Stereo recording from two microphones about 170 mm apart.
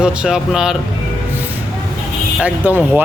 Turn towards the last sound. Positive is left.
turn(degrees=-10)  # may be behind; listen again after turning